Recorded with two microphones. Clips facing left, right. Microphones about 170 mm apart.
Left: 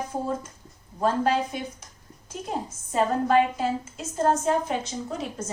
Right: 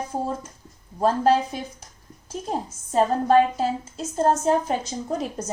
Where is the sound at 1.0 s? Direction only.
35° right (ahead or behind).